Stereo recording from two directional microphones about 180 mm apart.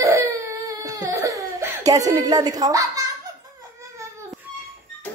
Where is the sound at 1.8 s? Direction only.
20° right (ahead or behind).